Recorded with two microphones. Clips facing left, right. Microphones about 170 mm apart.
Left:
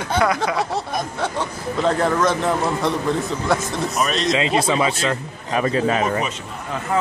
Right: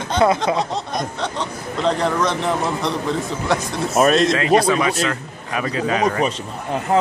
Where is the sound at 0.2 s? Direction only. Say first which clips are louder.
Right 4 dB; 25° right (ahead or behind).